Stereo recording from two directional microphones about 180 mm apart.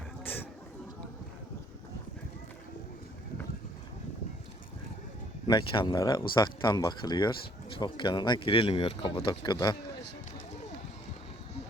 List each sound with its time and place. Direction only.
5.5 s speech: 25° left (ahead or behind)